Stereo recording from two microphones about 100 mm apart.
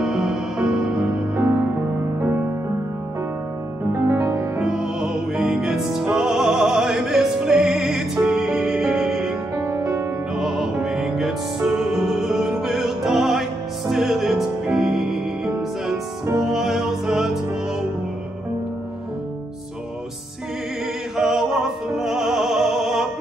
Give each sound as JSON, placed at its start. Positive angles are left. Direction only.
{"t": 0.0, "sound": "music", "side_deg": -5}
{"t": 1.3, "sound": "music", "side_deg": -20}
{"t": 3.9, "sound": "music", "side_deg": -25}
{"t": 4.4, "sound": "music", "side_deg": -5}
{"t": 9.7, "sound": "music", "side_deg": -30}
{"t": 10.3, "sound": "music", "side_deg": -5}
{"t": 21.2, "sound": "music", "side_deg": -5}